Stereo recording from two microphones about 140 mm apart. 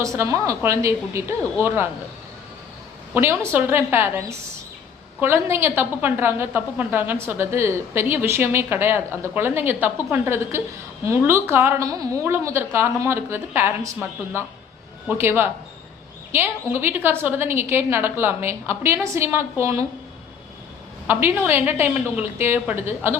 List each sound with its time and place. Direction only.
0.0 s a woman's voice: 20° right (ahead or behind)
3.2 s a woman's voice: 15° right (ahead or behind)
15.2 s a woman's voice: 15° right (ahead or behind)
21.1 s a woman's voice: 15° right (ahead or behind)